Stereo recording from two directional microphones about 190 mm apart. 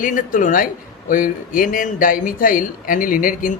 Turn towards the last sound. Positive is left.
turn(degrees=45)  # may be behind; listen again after turning